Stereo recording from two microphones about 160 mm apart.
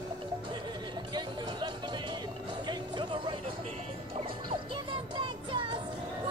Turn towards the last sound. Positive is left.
turn(degrees=-30)  # may be behind; listen again after turning